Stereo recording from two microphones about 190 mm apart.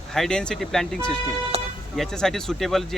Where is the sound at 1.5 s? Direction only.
35° right (ahead or behind).